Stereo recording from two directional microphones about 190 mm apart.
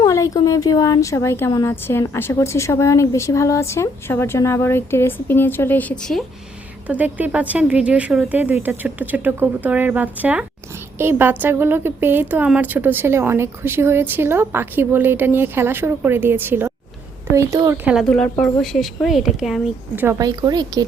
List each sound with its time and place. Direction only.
0.0 s a woman's voice: 15° left (ahead or behind)
6.8 s a woman's voice: 10° right (ahead or behind)
17.9 s speech: 5° left (ahead or behind)
20.1 s speech: 20° right (ahead or behind)